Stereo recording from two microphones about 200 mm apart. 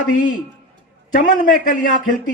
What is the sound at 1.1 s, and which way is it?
Speech, 40° left (ahead or behind).